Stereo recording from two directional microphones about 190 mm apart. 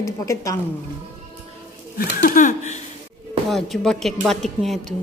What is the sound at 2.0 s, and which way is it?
Speech, 45° left (ahead or behind).